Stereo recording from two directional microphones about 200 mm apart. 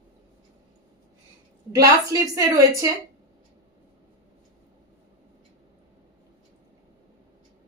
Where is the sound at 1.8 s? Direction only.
15° right (ahead or behind).